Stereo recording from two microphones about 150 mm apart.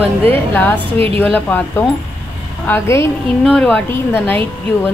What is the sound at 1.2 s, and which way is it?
Speech, 10° left (ahead or behind).